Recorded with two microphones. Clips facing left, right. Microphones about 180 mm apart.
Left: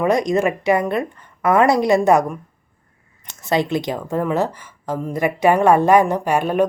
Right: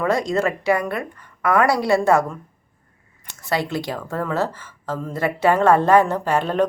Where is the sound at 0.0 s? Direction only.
20° left (ahead or behind).